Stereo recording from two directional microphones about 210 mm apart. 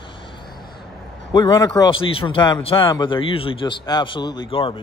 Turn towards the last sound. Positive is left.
turn(degrees=25)  # may be behind; listen again after turning